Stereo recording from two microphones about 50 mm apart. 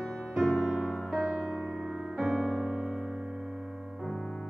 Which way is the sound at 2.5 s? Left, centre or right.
Centre.